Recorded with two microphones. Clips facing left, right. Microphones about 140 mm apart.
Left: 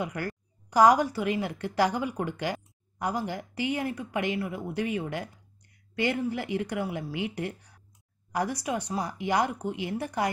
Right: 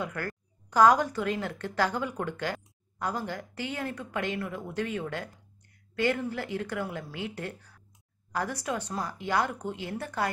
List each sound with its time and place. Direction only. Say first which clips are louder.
0.0 s a woman's voice: left 2 dB; 15° left (ahead or behind)